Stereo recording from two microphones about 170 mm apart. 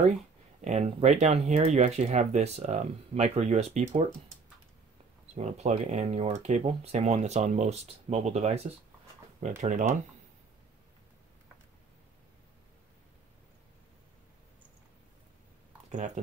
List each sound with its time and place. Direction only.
0.7 s speech: 40° right (ahead or behind)
5.3 s speech: 40° right (ahead or behind)